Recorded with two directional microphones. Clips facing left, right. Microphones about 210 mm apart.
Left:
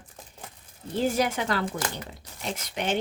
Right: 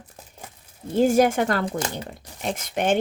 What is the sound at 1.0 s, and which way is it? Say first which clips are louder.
Speech: right 8 dB; 50° right (ahead or behind).